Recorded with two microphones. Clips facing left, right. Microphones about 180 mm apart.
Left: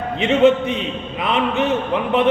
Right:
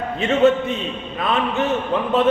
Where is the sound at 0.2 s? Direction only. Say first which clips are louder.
Left 2 dB; 20° left (ahead or behind).